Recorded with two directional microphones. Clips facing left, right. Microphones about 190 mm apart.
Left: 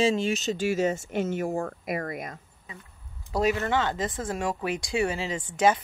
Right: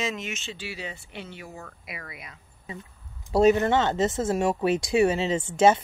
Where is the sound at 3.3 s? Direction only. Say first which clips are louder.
Right 6 dB; 30° right (ahead or behind).